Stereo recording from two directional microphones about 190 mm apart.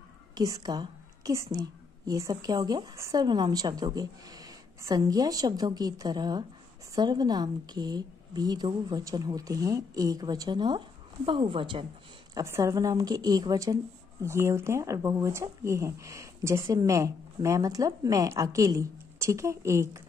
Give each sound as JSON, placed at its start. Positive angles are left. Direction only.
{"t": 0.3, "sound": "a woman's voice", "side_deg": -20}
{"t": 12.4, "sound": "a woman's voice", "side_deg": -15}